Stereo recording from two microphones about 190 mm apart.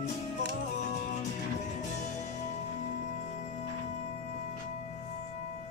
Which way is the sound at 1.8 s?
40° left (ahead or behind).